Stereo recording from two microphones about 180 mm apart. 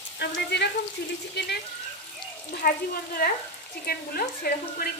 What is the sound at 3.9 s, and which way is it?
Speech, 55° left (ahead or behind).